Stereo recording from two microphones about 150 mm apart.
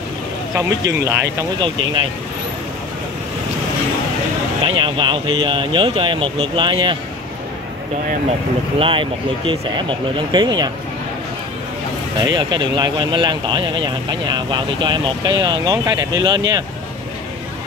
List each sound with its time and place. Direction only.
0.6 s speech: 20° right (ahead or behind)
4.6 s speech: 35° right (ahead or behind)
8.7 s speech: 35° right (ahead or behind)
12.2 s speech: 30° right (ahead or behind)